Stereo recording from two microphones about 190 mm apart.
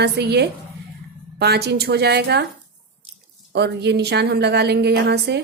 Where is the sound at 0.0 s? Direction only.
60° right (ahead or behind).